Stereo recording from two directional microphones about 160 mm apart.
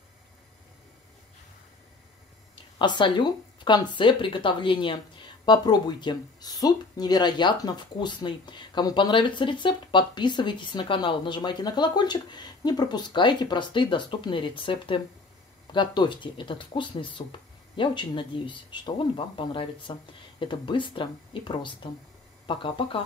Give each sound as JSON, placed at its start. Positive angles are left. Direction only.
{"t": 2.8, "sound": "speech", "side_deg": 30}